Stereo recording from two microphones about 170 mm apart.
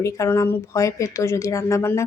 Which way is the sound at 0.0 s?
15° left (ahead or behind).